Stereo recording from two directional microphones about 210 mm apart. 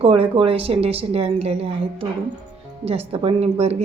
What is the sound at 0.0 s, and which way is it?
A woman's voice, 25° right (ahead or behind).